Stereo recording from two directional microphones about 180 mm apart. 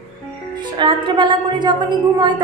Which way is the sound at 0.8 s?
25° right (ahead or behind).